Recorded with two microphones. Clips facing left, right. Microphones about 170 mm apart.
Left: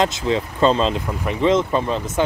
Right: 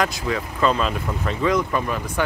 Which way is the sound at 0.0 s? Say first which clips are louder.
Left 4 dB; 25° left (ahead or behind).